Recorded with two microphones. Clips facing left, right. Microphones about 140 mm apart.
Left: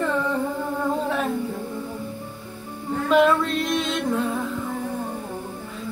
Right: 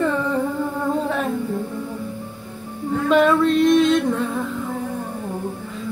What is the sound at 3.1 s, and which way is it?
Female singing, centre (ahead or behind).